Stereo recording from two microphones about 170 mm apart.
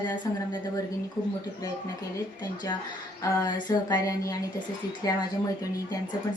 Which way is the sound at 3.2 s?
20° left (ahead or behind).